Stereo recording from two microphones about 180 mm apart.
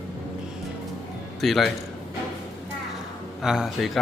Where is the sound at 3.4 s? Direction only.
5° right (ahead or behind).